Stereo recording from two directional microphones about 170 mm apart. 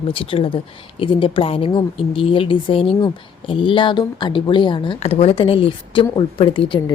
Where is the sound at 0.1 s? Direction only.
30° left (ahead or behind).